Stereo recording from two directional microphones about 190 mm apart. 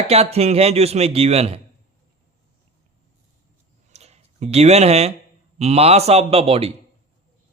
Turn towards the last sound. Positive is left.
turn(degrees=-30)  # may be behind; listen again after turning